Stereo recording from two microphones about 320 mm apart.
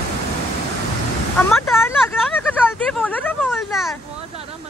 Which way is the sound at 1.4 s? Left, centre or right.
Centre.